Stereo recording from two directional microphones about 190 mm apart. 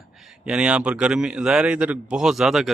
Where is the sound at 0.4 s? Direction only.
5° right (ahead or behind).